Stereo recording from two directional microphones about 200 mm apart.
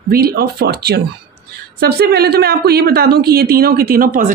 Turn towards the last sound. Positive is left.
turn(degrees=-45)  # may be behind; listen again after turning